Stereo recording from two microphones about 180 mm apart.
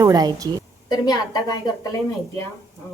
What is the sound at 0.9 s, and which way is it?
Speech, 25° left (ahead or behind).